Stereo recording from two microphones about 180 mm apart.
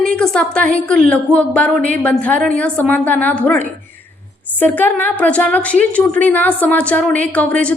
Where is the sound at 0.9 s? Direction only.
5° left (ahead or behind).